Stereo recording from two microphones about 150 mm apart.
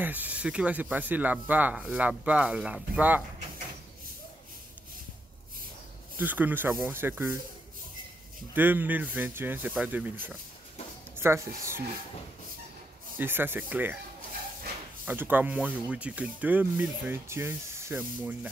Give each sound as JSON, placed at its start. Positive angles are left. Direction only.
{"t": 0.0, "sound": "speech", "side_deg": -10}
{"t": 6.1, "sound": "speech", "side_deg": -10}
{"t": 8.5, "sound": "speech", "side_deg": -10}
{"t": 11.1, "sound": "speech", "side_deg": -15}
{"t": 13.2, "sound": "speech", "side_deg": -15}
{"t": 15.0, "sound": "speech", "side_deg": -10}